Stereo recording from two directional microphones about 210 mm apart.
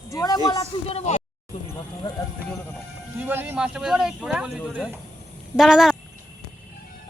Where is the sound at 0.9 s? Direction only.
30° left (ahead or behind).